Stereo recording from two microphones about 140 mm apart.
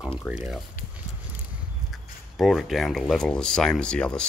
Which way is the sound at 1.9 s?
Centre (ahead or behind).